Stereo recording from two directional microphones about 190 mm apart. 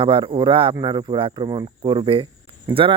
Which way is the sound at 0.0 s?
25° right (ahead or behind).